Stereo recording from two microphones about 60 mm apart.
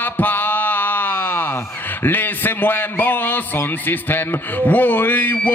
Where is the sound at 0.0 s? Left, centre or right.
Left.